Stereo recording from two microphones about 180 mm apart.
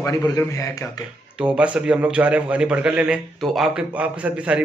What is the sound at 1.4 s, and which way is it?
A man's voice, 5° right (ahead or behind).